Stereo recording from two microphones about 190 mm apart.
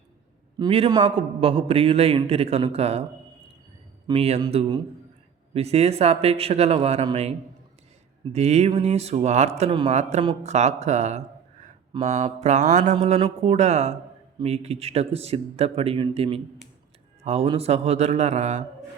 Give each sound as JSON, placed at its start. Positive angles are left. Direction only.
{"t": 0.6, "sound": "a man's voice", "side_deg": -25}
{"t": 4.0, "sound": "a man's voice", "side_deg": -30}